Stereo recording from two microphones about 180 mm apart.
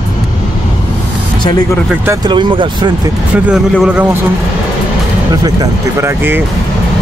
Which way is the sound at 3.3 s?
5° right (ahead or behind).